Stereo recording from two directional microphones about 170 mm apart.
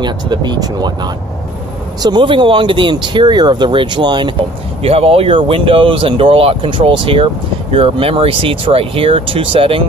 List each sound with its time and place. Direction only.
0.0 s speech: 25° right (ahead or behind)